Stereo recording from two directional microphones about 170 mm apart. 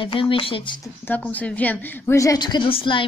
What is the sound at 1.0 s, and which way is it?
A woman's voice, 10° left (ahead or behind).